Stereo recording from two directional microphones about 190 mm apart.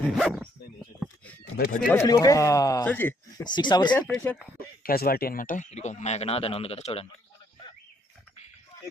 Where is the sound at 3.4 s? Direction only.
20° left (ahead or behind).